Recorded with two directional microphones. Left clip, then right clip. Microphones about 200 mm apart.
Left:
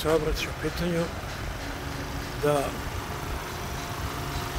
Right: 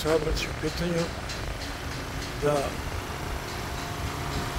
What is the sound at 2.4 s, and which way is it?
Speech, 10° left (ahead or behind).